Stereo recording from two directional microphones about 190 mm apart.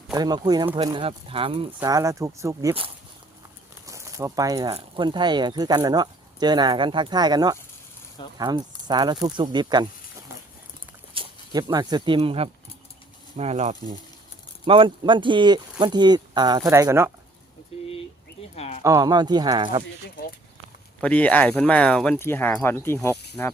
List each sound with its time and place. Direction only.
0.1 s speech: 20° right (ahead or behind)
1.8 s speech: 15° right (ahead or behind)
3.8 s a sound: 15° right (ahead or behind)
4.7 s speech: 25° right (ahead or behind)
11.1 s speech: 25° right (ahead or behind)
17.7 s a sound: 30° left (ahead or behind)
18.8 s speech: 15° right (ahead or behind)
21.0 s speech: 5° left (ahead or behind)